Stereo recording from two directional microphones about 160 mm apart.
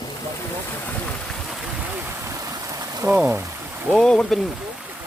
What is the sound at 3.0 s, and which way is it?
Speech, 10° right (ahead or behind).